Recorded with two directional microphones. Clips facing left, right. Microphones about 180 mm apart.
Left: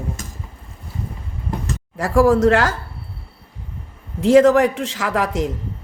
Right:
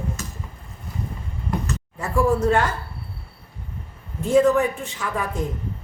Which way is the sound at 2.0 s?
90° left.